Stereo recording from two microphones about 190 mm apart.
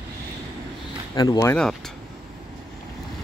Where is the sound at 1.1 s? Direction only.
20° left (ahead or behind).